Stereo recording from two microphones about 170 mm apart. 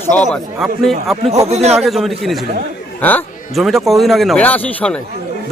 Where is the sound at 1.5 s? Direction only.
40° right (ahead or behind).